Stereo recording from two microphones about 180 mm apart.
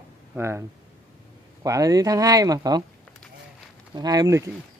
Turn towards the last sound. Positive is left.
turn(degrees=-20)  # may be behind; listen again after turning